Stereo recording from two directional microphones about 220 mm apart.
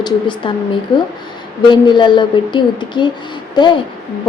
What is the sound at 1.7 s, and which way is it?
Speech, 20° left (ahead or behind).